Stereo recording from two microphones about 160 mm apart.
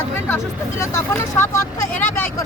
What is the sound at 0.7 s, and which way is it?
Speech, 15° left (ahead or behind).